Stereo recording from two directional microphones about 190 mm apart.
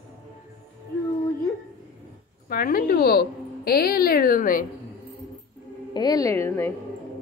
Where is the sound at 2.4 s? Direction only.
50° left (ahead or behind).